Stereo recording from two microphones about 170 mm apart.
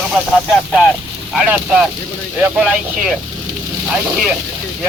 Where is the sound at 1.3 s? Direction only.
5° right (ahead or behind).